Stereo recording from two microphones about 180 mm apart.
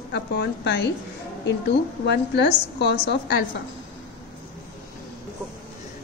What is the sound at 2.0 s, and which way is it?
A woman's voice, 70° left (ahead or behind).